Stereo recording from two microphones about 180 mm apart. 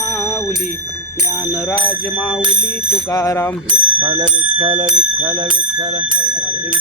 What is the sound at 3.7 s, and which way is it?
Speech, 25° right (ahead or behind).